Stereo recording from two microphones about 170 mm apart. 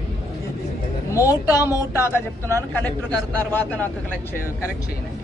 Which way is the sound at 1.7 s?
15° left (ahead or behind).